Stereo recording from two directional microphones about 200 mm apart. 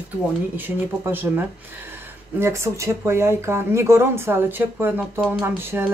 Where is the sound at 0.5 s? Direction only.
10° right (ahead or behind).